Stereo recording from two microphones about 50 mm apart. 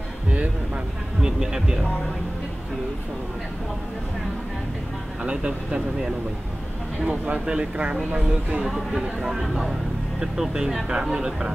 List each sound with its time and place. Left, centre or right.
1.2 s speech: centre
5.2 s speech: right
7.1 s speech: right
8.6 s speech: centre